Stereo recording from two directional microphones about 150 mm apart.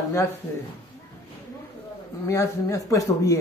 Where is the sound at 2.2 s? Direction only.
20° left (ahead or behind).